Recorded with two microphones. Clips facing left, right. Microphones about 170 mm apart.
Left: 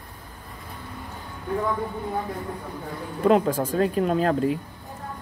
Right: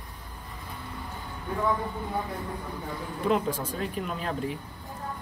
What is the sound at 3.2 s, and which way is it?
Speech, 45° left (ahead or behind).